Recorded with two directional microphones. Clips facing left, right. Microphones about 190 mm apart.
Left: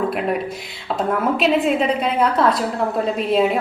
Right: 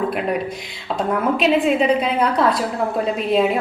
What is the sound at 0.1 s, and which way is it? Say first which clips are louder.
A woman's voice: even; centre (ahead or behind).